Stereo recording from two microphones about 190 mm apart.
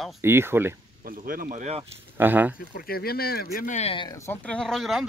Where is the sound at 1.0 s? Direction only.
50° right (ahead or behind).